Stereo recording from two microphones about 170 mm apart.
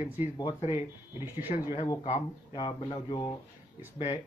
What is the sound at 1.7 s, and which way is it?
Speech, 30° left (ahead or behind).